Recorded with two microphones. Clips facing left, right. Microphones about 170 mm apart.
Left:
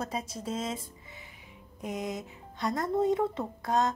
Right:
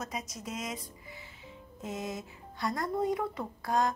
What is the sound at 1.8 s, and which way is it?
A woman's voice, 15° left (ahead or behind).